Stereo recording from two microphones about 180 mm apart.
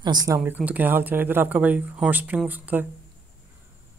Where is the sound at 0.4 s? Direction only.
5° right (ahead or behind).